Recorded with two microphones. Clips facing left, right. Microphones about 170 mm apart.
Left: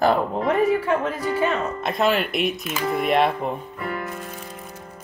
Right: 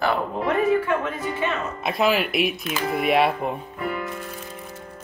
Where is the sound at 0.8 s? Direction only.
35° left (ahead or behind).